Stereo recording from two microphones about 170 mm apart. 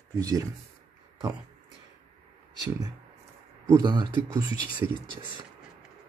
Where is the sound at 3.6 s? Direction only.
25° right (ahead or behind).